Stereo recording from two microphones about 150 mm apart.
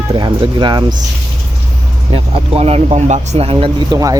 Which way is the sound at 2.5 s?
40° right (ahead or behind).